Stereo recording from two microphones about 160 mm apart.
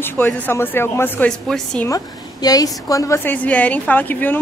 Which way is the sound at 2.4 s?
20° left (ahead or behind).